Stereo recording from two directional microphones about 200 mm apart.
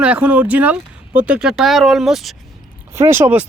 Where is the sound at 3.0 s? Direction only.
10° right (ahead or behind).